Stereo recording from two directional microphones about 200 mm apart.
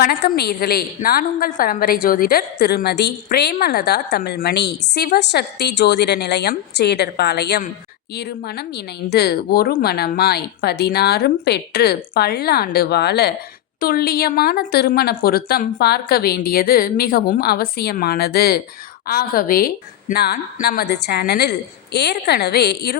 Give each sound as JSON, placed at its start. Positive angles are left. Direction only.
{"t": 0.0, "sound": "a woman's voice", "side_deg": 50}